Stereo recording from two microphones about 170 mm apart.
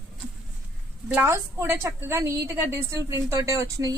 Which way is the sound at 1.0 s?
10° right (ahead or behind).